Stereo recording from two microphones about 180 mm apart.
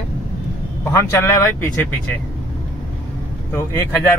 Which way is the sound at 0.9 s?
15° left (ahead or behind).